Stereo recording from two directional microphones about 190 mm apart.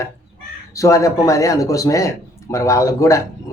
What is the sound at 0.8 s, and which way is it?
Speech, 15° left (ahead or behind).